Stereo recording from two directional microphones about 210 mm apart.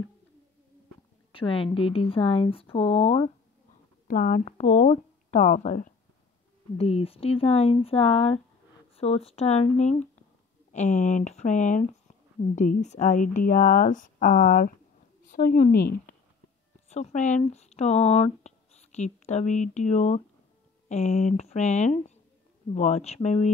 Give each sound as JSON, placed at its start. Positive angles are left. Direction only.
{"t": 1.3, "sound": "speech", "side_deg": 25}
{"t": 4.1, "sound": "speech", "side_deg": 40}
{"t": 16.9, "sound": "speech", "side_deg": 35}